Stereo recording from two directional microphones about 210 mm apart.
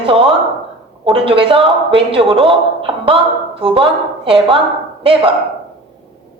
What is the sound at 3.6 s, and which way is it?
Speech, 25° right (ahead or behind).